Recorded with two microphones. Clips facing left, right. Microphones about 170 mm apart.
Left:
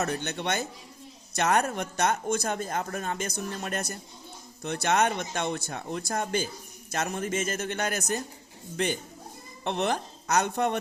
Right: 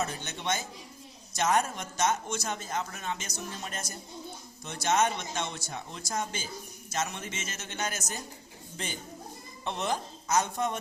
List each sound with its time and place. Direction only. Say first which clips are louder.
0.0 s speech: left 4 dB; 65° left (ahead or behind)